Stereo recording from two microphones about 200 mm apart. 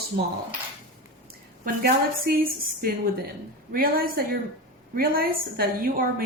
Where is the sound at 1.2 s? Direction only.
45° right (ahead or behind).